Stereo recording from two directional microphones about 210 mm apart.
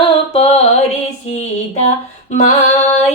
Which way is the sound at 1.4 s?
30° left (ahead or behind).